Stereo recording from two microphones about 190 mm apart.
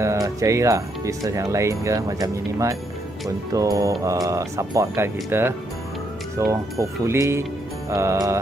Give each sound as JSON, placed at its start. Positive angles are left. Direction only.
{"t": 0.0, "sound": "speech", "side_deg": -15}